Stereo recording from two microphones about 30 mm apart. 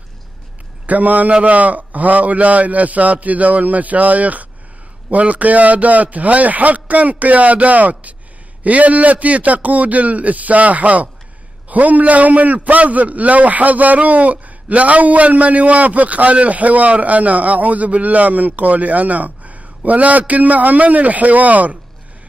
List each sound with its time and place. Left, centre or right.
0.8 s a man's voice: right